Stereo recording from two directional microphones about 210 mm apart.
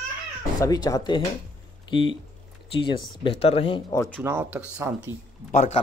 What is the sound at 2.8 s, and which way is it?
Speech, 25° left (ahead or behind).